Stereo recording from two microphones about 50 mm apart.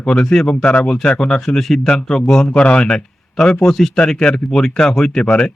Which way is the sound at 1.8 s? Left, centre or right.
Centre.